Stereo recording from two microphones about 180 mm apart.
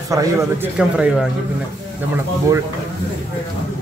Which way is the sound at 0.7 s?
5° right (ahead or behind).